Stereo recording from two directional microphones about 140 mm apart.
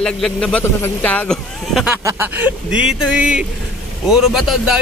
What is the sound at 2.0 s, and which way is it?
A man's voice, 15° right (ahead or behind).